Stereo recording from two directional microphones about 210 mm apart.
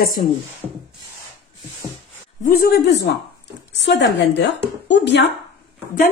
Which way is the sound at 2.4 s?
45° left (ahead or behind).